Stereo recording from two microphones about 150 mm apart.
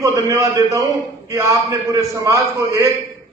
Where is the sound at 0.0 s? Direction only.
20° right (ahead or behind).